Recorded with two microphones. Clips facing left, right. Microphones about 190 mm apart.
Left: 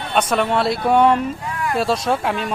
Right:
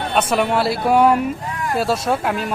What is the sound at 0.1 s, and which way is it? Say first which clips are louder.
Speech: even; 5° right (ahead or behind).